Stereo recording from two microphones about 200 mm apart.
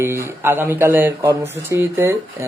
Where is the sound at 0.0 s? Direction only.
15° right (ahead or behind).